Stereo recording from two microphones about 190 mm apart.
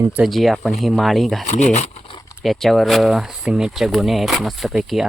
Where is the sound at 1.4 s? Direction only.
40° left (ahead or behind).